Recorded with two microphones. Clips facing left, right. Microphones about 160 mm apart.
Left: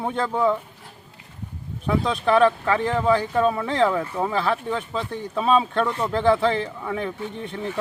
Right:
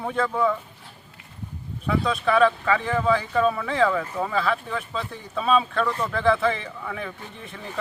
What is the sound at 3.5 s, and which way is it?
Speech, 25° left (ahead or behind).